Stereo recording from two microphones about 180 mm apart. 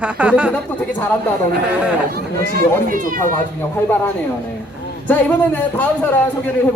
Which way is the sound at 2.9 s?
50° right (ahead or behind).